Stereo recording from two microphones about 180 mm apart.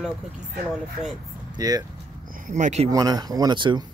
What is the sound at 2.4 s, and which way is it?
Speech, 45° right (ahead or behind).